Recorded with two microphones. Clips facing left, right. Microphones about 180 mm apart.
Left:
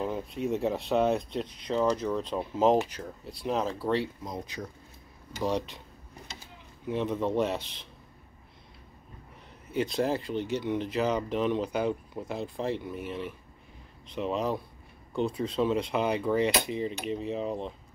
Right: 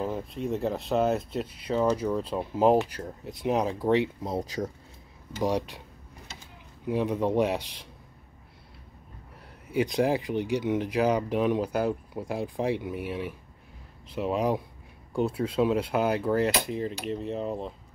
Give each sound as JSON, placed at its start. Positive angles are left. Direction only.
{"t": 0.0, "sound": "speech", "side_deg": 0}
{"t": 4.2, "sound": "speech", "side_deg": -35}
{"t": 5.4, "sound": "speech", "side_deg": -10}
{"t": 6.9, "sound": "speech", "side_deg": -10}
{"t": 9.7, "sound": "speech", "side_deg": -10}